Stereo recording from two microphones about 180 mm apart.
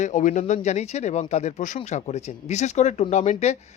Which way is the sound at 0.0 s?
45° left (ahead or behind).